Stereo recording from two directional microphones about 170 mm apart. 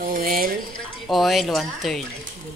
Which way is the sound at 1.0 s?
Centre (ahead or behind).